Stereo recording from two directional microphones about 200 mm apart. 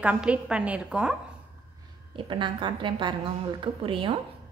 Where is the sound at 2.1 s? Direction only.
25° right (ahead or behind).